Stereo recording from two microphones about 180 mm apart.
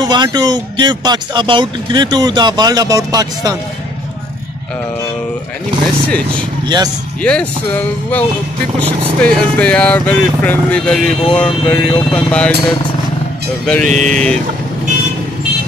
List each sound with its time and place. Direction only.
0.0 s speech: 25° right (ahead or behind)
6.3 s speech: 25° right (ahead or behind)
7.2 s speech: 5° left (ahead or behind)
13.8 s speech: 40° right (ahead or behind)
14.1 s speech: 5° left (ahead or behind)